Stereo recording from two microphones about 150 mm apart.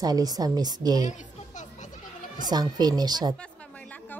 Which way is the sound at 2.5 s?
25° right (ahead or behind).